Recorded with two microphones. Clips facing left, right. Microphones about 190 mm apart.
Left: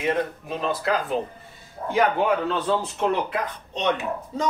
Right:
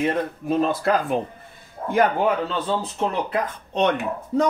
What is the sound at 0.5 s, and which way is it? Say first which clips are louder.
Speech: right 8 dB; 50° right (ahead or behind).